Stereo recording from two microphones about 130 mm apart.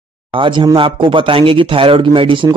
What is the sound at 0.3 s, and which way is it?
Speech, 40° right (ahead or behind).